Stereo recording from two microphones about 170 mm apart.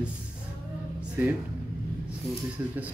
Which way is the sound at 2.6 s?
10° right (ahead or behind).